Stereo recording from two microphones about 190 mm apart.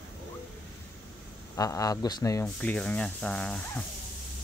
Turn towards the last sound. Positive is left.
turn(degrees=5)  # may be behind; listen again after turning